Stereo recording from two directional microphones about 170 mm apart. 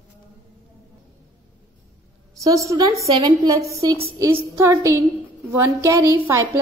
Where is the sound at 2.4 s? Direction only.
20° right (ahead or behind).